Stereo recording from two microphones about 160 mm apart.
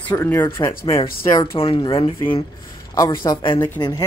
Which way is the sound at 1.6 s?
30° left (ahead or behind).